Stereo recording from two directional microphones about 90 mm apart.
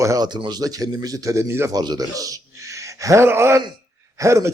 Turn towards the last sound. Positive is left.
turn(degrees=-35)  # may be behind; listen again after turning